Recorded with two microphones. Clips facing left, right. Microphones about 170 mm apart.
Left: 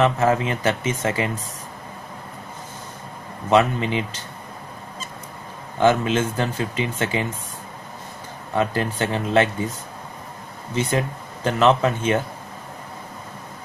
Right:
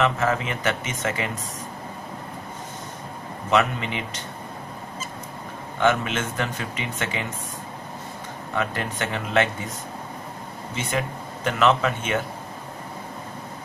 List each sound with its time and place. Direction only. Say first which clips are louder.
0.0 s speech: left 4 dB; 35° left (ahead or behind)
3.4 s speech: left 4 dB; 35° left (ahead or behind)
5.8 s speech: left 4 dB; 35° left (ahead or behind)
8.5 s speech: left 5 dB; 30° left (ahead or behind)
10.8 s speech: left 5 dB; 35° left (ahead or behind)